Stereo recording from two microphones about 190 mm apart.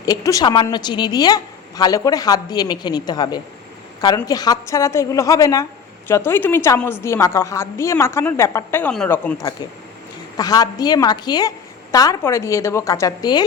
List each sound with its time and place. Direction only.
0.0 s a woman's voice: 20° left (ahead or behind)